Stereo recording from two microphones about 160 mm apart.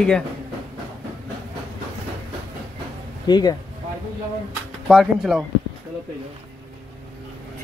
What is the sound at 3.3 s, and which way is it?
Speech, 25° left (ahead or behind).